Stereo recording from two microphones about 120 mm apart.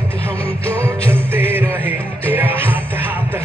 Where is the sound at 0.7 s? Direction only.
10° left (ahead or behind).